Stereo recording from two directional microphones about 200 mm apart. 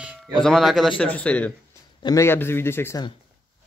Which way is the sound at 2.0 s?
15° left (ahead or behind).